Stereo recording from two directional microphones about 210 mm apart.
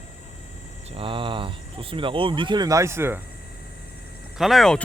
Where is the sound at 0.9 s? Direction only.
25° right (ahead or behind).